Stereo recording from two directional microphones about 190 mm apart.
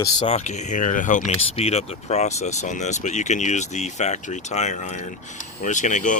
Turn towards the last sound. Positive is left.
turn(degrees=40)  # may be behind; listen again after turning